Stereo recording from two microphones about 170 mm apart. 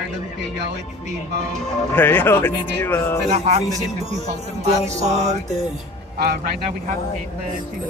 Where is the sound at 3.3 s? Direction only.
40° right (ahead or behind).